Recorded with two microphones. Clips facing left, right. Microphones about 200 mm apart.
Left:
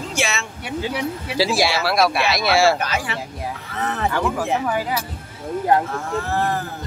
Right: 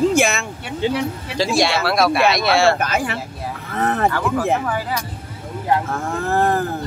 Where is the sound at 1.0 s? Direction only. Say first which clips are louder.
Even; 10° left (ahead or behind).